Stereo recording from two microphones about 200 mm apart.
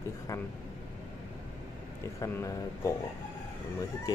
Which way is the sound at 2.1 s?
15° left (ahead or behind).